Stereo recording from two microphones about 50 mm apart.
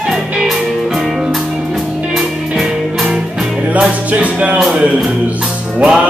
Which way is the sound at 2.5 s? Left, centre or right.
Centre.